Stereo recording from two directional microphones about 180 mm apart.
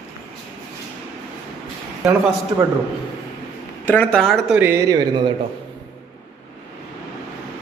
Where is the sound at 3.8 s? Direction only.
10° left (ahead or behind).